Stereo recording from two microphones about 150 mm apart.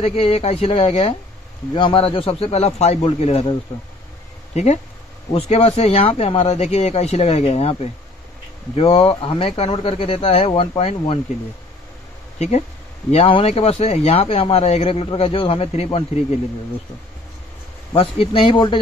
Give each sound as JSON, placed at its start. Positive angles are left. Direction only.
{"t": 0.0, "sound": "speech", "side_deg": 40}
{"t": 1.7, "sound": "speech", "side_deg": 35}
{"t": 4.6, "sound": "speech", "side_deg": 45}
{"t": 12.4, "sound": "speech", "side_deg": 45}
{"t": 17.9, "sound": "speech", "side_deg": 35}